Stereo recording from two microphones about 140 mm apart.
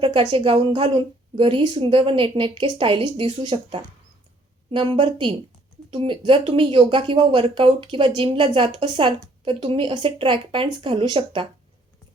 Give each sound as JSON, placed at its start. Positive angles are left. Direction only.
{"t": 0.0, "sound": "speech", "side_deg": -35}